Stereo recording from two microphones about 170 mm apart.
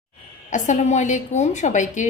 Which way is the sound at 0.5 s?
45° left (ahead or behind).